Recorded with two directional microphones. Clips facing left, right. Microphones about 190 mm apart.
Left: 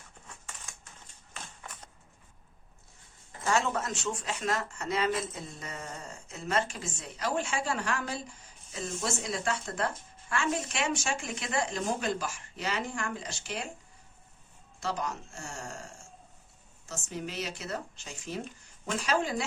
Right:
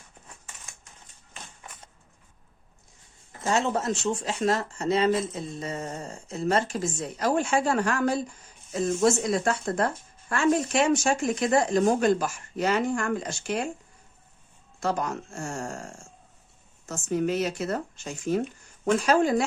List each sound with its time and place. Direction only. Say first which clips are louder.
3.4 s speech: right 4 dB; 25° right (ahead or behind); by 13.7 s 50° right (ahead or behind)
14.8 s speech: right 6 dB; 50° right (ahead or behind)